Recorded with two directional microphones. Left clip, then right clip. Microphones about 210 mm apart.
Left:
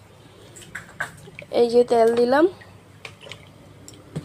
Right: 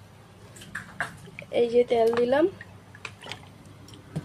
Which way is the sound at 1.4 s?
10° left (ahead or behind).